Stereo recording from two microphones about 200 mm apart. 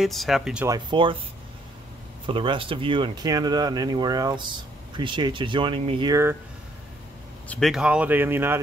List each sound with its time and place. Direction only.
0.0 s speech: centre (ahead or behind)
0.7 s speech: 20° right (ahead or behind)
2.2 s speech: 25° right (ahead or behind)
7.4 s speech: 5° left (ahead or behind)